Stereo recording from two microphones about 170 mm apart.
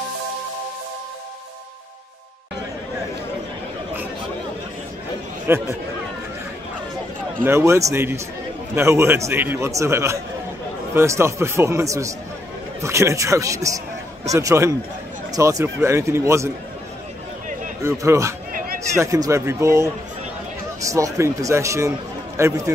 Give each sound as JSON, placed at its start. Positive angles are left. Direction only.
{"t": 5.5, "sound": "a man's voice", "side_deg": -10}
{"t": 7.4, "sound": "a man's voice", "side_deg": -15}
{"t": 17.8, "sound": "a man's voice", "side_deg": -15}